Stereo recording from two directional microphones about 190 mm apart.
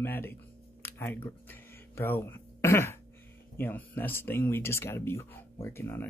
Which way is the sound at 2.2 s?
10° left (ahead or behind).